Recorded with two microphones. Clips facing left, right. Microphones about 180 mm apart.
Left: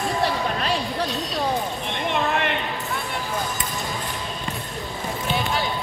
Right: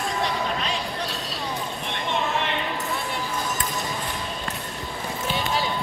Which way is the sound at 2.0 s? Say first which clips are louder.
Left 3 dB; 60° left (ahead or behind).